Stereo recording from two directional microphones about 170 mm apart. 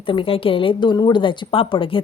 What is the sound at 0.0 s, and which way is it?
A woman's voice, 30° left (ahead or behind).